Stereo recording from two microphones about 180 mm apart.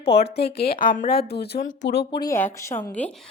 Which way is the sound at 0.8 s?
50° left (ahead or behind).